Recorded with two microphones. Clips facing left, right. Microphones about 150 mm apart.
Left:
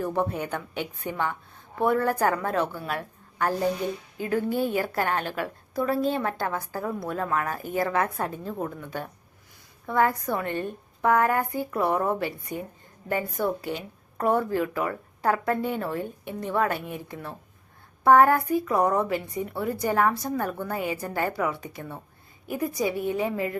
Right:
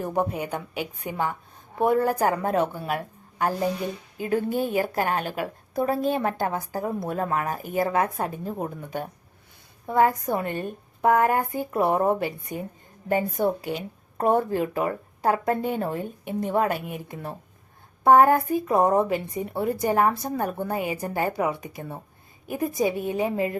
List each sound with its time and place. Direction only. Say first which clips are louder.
0.0 s a woman's voice: right 1 dB; 15° right (ahead or behind)
1.1 s speech: right 2 dB; 40° right (ahead or behind)
1.8 s a woman's voice: right 2 dB; 15° right (ahead or behind)
10.0 s a woman's voice: right 3 dB; 20° right (ahead or behind)